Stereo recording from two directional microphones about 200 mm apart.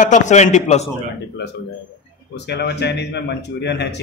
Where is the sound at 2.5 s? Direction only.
55° left (ahead or behind).